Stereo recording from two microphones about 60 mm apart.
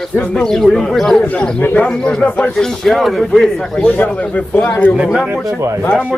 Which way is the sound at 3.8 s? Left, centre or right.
Left.